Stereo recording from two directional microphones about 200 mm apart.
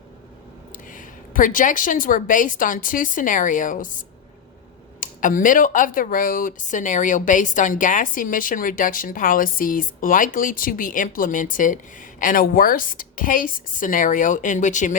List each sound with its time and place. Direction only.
0.7 s a woman's voice: 40° left (ahead or behind)
4.9 s speech: 40° left (ahead or behind)